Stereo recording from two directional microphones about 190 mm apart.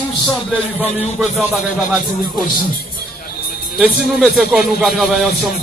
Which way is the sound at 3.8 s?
5° right (ahead or behind).